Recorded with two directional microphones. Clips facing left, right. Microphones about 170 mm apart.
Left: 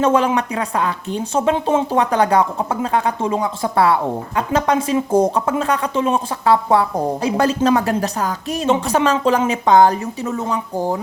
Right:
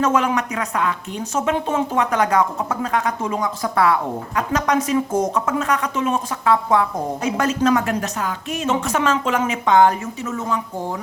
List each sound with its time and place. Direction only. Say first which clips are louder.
0.0 s speech: left 3 dB; 30° left (ahead or behind)